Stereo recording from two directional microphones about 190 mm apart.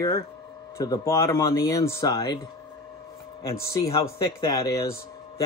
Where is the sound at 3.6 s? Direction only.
15° left (ahead or behind).